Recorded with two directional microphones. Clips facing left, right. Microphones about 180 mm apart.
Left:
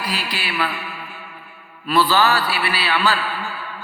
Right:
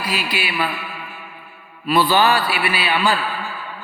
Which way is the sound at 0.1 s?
10° right (ahead or behind).